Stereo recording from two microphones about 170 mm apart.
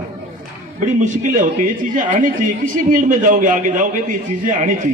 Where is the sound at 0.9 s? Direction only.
45° right (ahead or behind).